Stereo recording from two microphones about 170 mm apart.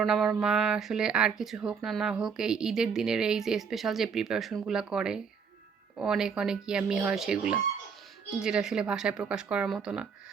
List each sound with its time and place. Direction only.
0.0 s speech: 5° right (ahead or behind)